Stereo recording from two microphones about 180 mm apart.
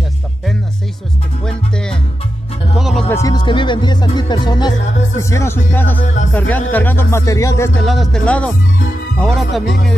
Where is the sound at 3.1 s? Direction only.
20° left (ahead or behind).